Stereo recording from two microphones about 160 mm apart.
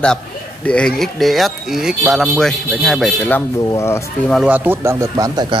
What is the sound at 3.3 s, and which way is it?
Speech, 20° left (ahead or behind).